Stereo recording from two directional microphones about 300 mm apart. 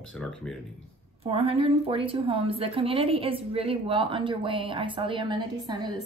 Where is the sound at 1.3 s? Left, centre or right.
Centre.